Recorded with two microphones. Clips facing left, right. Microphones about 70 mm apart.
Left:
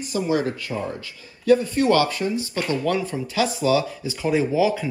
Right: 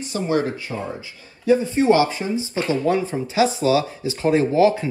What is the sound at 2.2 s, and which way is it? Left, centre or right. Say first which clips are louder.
Speech: even; right.